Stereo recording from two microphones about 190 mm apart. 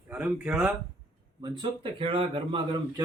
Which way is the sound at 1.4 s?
25° right (ahead or behind).